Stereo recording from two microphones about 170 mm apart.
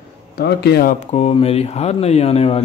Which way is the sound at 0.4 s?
75° left (ahead or behind).